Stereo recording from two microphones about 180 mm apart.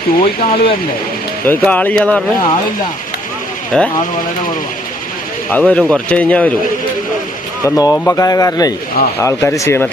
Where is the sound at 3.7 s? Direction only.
5° left (ahead or behind).